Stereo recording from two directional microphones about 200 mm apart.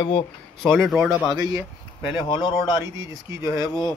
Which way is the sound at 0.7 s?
5° right (ahead or behind).